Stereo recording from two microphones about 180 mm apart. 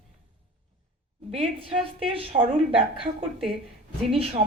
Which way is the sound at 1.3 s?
35° right (ahead or behind).